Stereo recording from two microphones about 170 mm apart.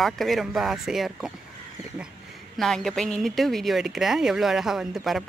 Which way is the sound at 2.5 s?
Centre (ahead or behind).